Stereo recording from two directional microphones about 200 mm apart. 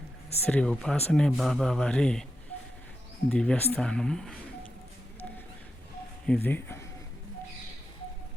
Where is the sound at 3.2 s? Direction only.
5° left (ahead or behind).